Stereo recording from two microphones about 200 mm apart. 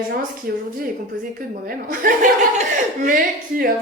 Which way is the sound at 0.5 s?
45° right (ahead or behind).